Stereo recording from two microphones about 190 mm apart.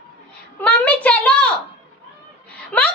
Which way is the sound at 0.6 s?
5° left (ahead or behind).